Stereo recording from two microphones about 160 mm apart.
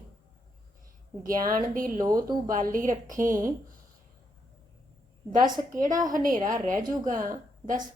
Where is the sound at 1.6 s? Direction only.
60° right (ahead or behind).